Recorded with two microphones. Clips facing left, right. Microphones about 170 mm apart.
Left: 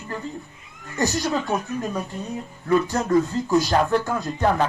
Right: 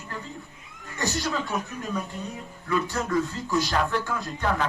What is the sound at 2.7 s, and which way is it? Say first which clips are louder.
Speech: left 7 dB; 45° left (ahead or behind).